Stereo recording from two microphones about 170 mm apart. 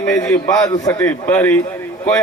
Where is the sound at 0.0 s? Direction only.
10° left (ahead or behind).